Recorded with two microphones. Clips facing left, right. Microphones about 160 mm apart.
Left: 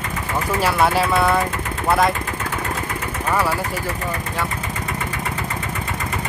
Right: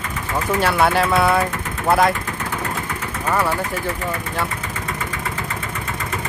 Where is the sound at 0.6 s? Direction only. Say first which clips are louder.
Even; centre (ahead or behind).